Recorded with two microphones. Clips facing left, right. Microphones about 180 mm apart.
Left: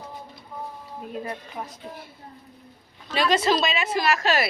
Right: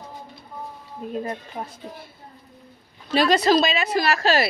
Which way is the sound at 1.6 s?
25° right (ahead or behind).